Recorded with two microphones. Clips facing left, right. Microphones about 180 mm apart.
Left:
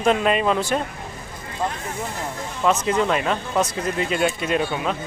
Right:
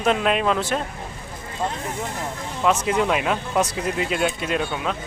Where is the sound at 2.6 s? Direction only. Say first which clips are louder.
Even; 5° right (ahead or behind).